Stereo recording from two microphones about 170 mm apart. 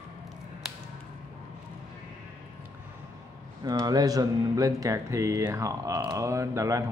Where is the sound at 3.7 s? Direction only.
25° right (ahead or behind).